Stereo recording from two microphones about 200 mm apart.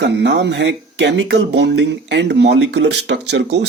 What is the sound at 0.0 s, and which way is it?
Speech, 60° right (ahead or behind).